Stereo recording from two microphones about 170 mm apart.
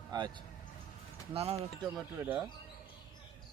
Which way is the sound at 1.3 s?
35° right (ahead or behind).